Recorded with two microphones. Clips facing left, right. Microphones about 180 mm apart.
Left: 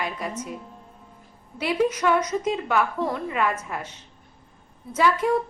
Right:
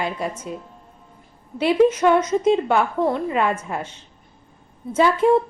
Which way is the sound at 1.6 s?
25° right (ahead or behind).